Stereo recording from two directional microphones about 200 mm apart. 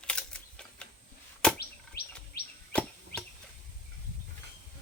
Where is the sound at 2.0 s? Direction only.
50° left (ahead or behind).